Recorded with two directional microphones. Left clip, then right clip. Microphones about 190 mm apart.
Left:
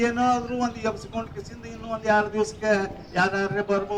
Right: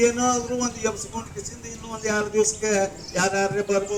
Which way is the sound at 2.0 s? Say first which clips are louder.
Left 2 dB; 30° left (ahead or behind).